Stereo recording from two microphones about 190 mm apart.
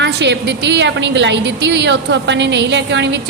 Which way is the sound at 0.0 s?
65° right (ahead or behind).